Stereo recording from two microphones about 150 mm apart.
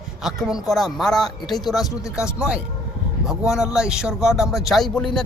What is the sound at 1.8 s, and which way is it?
Speech, 20° left (ahead or behind).